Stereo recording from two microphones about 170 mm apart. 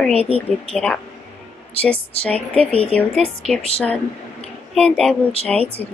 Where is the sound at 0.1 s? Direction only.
35° right (ahead or behind).